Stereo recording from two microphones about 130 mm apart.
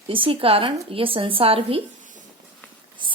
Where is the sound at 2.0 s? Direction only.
75° right (ahead or behind).